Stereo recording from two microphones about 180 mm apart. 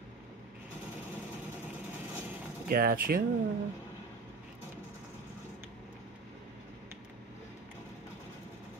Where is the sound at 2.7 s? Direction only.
55° right (ahead or behind).